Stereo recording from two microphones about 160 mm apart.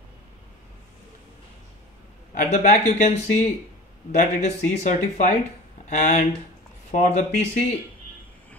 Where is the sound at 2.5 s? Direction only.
50° left (ahead or behind).